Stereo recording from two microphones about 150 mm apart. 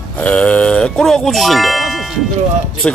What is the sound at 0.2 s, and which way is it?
Speech, 10° left (ahead or behind).